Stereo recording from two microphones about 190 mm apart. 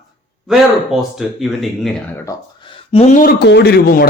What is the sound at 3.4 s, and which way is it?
Speech, 60° left (ahead or behind).